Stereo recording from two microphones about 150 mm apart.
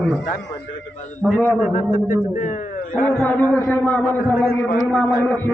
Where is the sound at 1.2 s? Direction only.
5° left (ahead or behind).